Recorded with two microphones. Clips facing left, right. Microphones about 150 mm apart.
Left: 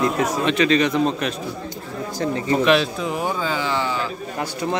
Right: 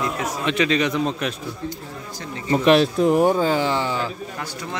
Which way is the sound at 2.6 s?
45° right (ahead or behind).